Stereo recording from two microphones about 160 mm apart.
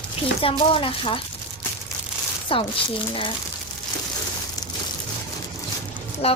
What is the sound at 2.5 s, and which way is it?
Speech, 35° left (ahead or behind).